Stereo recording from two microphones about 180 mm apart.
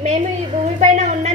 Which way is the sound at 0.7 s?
40° right (ahead or behind).